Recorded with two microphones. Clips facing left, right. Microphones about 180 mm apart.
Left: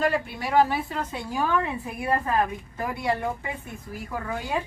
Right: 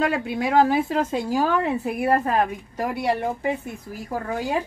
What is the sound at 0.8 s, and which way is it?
Speech, 90° right.